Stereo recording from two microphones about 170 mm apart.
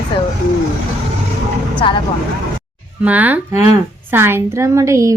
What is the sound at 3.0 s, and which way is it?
A woman's voice, 10° right (ahead or behind).